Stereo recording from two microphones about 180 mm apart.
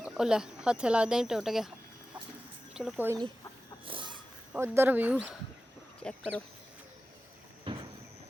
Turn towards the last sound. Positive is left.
turn(degrees=5)  # may be behind; listen again after turning